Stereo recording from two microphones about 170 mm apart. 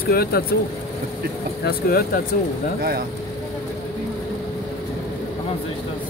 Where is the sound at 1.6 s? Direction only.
60° left (ahead or behind).